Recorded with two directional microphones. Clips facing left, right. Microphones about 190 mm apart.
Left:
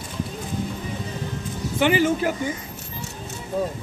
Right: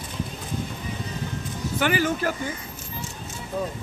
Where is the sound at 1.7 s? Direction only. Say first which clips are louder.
Left 4 dB; 20° left (ahead or behind).